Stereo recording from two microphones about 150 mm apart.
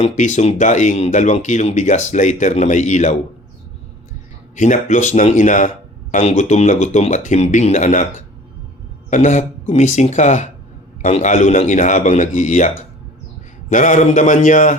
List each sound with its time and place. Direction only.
0.0 s speech: 50° left (ahead or behind)
4.5 s speech: 55° left (ahead or behind)
9.0 s a man's voice: 55° left (ahead or behind)